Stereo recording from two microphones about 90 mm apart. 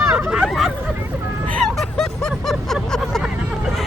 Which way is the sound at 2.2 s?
5° left (ahead or behind).